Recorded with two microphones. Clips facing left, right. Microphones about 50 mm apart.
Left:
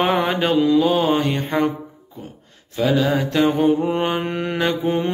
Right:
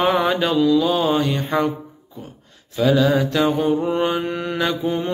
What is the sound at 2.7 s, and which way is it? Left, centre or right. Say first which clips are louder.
Mantra: right 2 dB; left.